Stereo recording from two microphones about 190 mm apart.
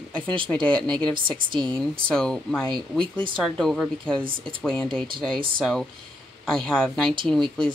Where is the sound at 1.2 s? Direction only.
25° right (ahead or behind).